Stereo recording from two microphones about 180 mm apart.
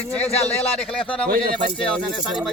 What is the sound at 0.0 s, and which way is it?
Speech, 35° left (ahead or behind).